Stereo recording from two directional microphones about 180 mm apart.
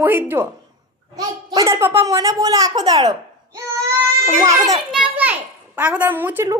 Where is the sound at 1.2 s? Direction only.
20° right (ahead or behind).